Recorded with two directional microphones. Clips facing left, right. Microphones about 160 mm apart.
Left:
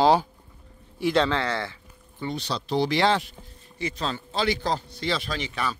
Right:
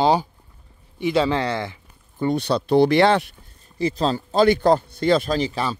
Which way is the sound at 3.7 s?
35° right (ahead or behind).